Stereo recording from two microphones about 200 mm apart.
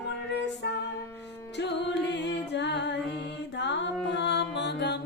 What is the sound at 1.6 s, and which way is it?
Music, 60° left (ahead or behind).